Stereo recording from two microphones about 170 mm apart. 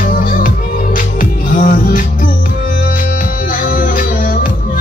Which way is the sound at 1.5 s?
55° left (ahead or behind).